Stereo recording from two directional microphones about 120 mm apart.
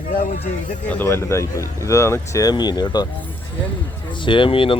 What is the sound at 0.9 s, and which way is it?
Speech, 20° left (ahead or behind).